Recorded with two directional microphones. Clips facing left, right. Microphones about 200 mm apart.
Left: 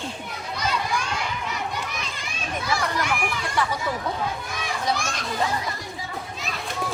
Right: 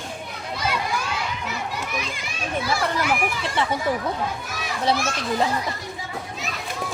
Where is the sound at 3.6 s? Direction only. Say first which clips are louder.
Right 1 dB; 25° right (ahead or behind).